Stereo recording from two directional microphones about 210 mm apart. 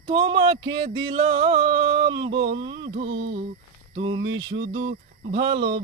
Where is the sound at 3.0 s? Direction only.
55° right (ahead or behind).